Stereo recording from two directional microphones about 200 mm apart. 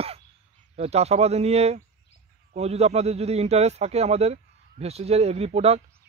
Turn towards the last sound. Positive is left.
turn(degrees=-30)  # may be behind; listen again after turning